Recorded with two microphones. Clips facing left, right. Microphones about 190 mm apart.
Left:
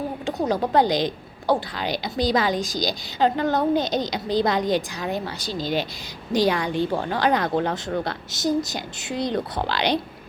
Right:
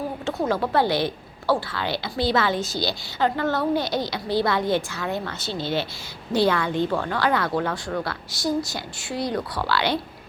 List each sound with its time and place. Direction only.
0.3 s a woman's voice: 20° left (ahead or behind)